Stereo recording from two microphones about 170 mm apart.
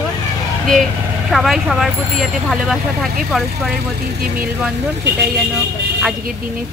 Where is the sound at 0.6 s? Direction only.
Centre (ahead or behind).